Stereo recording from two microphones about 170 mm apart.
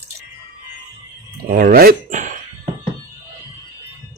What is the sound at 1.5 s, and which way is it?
Speech, 60° right (ahead or behind).